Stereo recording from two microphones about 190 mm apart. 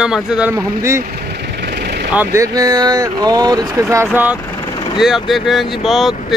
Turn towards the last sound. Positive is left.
turn(degrees=0)  # may be behind; listen again after turning